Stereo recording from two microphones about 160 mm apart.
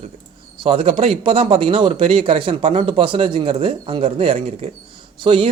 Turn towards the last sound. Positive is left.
turn(degrees=-35)  # may be behind; listen again after turning